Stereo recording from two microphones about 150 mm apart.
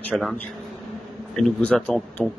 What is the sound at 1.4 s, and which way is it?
Speech, 5° left (ahead or behind).